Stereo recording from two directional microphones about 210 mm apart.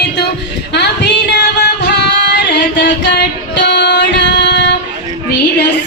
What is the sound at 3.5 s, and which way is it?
Music, 55° left (ahead or behind).